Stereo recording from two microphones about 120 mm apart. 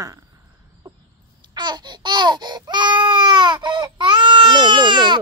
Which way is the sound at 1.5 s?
40° right (ahead or behind).